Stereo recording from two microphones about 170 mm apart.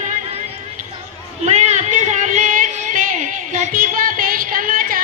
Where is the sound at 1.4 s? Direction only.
40° right (ahead or behind).